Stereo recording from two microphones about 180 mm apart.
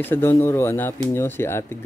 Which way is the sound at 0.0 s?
15° left (ahead or behind).